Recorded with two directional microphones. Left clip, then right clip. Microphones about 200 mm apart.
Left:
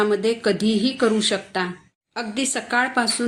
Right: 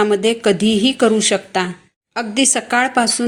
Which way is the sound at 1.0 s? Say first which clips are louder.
Right 6 dB; 30° right (ahead or behind).